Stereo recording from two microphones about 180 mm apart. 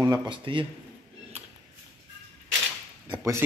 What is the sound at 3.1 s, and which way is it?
Speech, 15° right (ahead or behind).